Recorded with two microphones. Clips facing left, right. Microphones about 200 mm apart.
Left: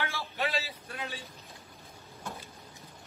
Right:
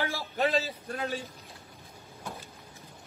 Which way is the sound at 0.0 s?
40° right (ahead or behind).